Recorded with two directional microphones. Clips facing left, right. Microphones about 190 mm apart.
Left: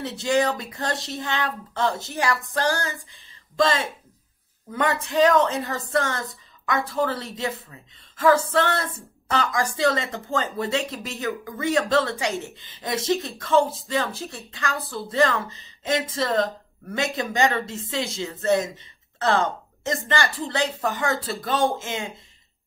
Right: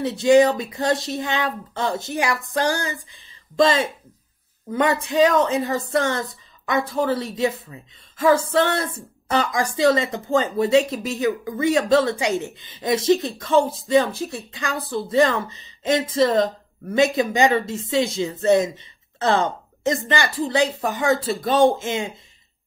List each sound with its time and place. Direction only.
0.0 s a woman's voice: 15° right (ahead or behind)